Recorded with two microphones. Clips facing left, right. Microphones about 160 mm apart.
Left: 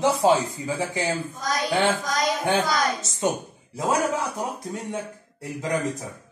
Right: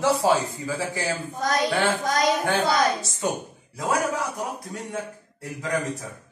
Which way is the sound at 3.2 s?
25° left (ahead or behind).